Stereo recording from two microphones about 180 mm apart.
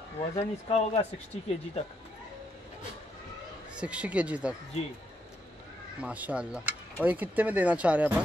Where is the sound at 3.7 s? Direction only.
5° right (ahead or behind).